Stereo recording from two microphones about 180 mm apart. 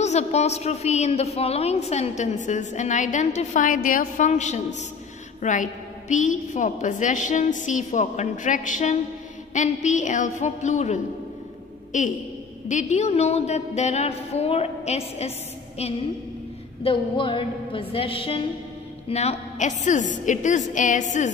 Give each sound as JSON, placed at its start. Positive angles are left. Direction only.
{"t": 0.0, "sound": "a woman's voice", "side_deg": 40}
{"t": 16.8, "sound": "a woman's voice", "side_deg": 30}